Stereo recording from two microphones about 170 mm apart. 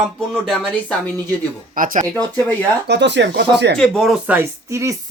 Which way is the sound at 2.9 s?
90° right.